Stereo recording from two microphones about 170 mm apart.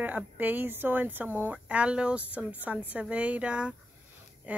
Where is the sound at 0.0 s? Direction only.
10° right (ahead or behind).